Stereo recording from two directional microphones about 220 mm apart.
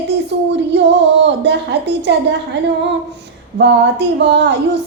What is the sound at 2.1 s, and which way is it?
Speech, 50° right (ahead or behind).